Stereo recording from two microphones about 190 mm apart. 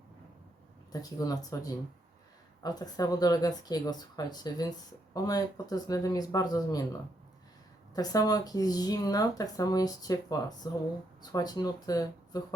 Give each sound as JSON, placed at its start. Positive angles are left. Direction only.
{"t": 1.2, "sound": "speech", "side_deg": 20}